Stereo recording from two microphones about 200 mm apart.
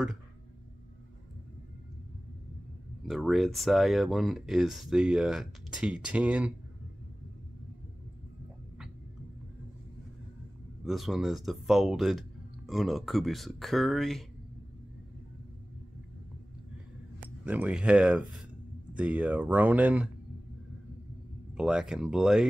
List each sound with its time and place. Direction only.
3.1 s speech: centre (ahead or behind)
10.9 s speech: centre (ahead or behind)
17.5 s speech: 5° right (ahead or behind)
21.5 s speech: 5° right (ahead or behind)